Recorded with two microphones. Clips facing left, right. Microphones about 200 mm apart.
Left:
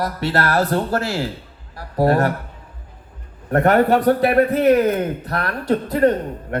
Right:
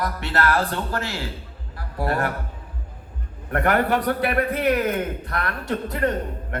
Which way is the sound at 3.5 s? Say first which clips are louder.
Left 6 dB; 30° left (ahead or behind).